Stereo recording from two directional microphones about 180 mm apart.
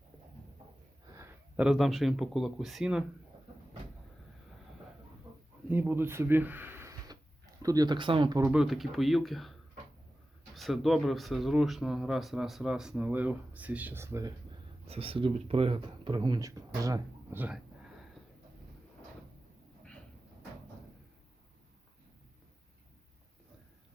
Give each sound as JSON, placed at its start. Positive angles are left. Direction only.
{"t": 1.1, "sound": "a sound", "side_deg": -15}
{"t": 1.6, "sound": "speech", "side_deg": 0}
{"t": 5.6, "sound": "speech", "side_deg": -10}
{"t": 8.4, "sound": "speech", "side_deg": -5}
{"t": 14.8, "sound": "speech", "side_deg": -30}